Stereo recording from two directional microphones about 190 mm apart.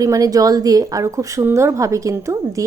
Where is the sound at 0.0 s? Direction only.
20° right (ahead or behind).